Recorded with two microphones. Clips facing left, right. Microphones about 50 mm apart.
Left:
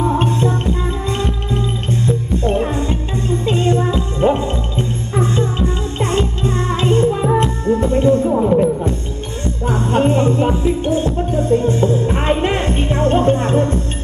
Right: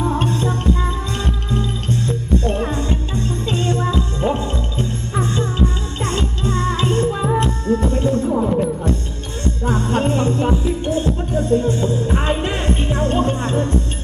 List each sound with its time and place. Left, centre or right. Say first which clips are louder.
0.0 s music: left 3 dB; left
7.1 s music: left 3 dB; centre
7.3 s music: left 3 dB; left